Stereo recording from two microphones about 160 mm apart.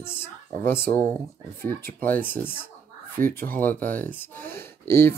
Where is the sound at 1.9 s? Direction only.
60° right (ahead or behind).